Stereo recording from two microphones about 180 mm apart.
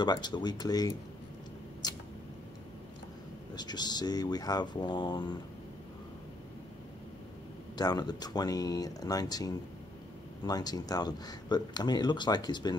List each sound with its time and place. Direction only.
0.0 s speech: 25° left (ahead or behind)
1.8 s a sound: 20° left (ahead or behind)
3.5 s speech: 25° left (ahead or behind)
7.7 s speech: 20° left (ahead or behind)